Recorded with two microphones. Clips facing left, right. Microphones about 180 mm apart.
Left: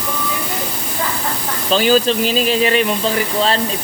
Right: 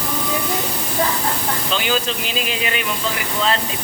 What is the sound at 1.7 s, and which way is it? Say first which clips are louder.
Speech: left 10 dB; 35° left (ahead or behind).